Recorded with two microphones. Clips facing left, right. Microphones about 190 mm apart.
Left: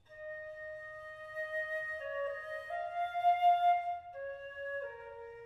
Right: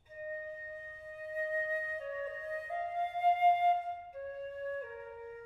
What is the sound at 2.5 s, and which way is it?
Flute, 10° right (ahead or behind).